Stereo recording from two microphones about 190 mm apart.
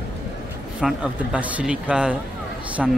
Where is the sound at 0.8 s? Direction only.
5° right (ahead or behind).